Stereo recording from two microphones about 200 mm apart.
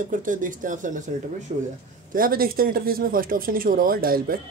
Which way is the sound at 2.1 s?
45° right (ahead or behind).